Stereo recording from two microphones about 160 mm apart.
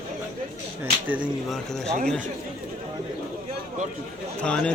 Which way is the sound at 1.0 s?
10° right (ahead or behind).